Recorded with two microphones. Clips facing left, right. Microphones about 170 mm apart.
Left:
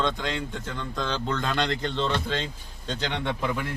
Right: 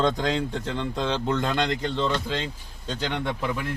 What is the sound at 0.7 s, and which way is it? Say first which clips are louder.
Speech: right 3 dB; 25° right (ahead or behind).